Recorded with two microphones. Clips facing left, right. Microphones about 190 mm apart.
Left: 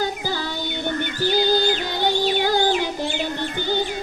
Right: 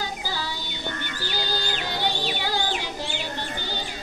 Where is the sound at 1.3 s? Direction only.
50° left (ahead or behind).